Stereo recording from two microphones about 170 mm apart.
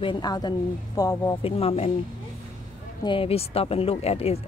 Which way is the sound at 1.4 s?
35° left (ahead or behind).